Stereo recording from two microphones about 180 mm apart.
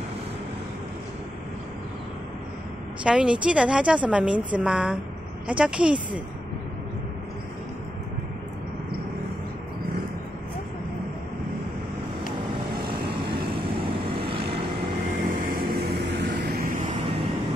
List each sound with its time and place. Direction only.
3.0 s a woman's voice: 5° right (ahead or behind)
13.2 s vehicle: 30° right (ahead or behind)
15.2 s vehicle: 50° right (ahead or behind)